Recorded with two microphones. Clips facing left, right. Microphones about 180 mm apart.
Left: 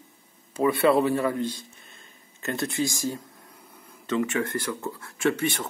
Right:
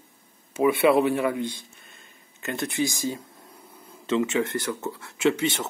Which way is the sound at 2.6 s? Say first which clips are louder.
Right 1 dB; 20° right (ahead or behind).